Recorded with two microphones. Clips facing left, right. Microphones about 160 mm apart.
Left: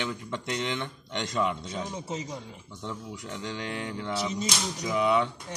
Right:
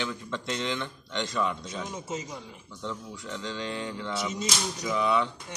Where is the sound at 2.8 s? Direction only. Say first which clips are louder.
Right 1 dB; 15° left (ahead or behind).